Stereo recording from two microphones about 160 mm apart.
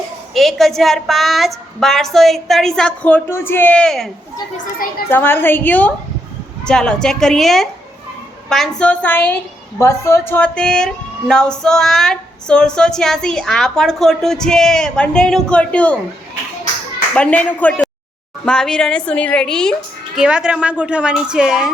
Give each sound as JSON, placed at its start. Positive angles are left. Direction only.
{"t": 0.3, "sound": "a woman's voice", "side_deg": 0}
{"t": 4.5, "sound": "a child's voice", "side_deg": 60}
{"t": 5.0, "sound": "a woman's voice", "side_deg": 15}
{"t": 17.2, "sound": "a woman's voice", "side_deg": 10}
{"t": 20.1, "sound": "a woman's voice", "side_deg": -5}